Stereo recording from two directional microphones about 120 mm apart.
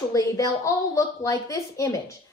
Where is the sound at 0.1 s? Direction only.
30° left (ahead or behind).